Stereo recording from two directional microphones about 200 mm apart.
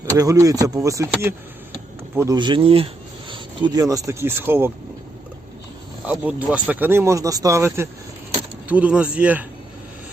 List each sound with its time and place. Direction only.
0.0 s speech: 15° right (ahead or behind)
6.1 s speech: 5° right (ahead or behind)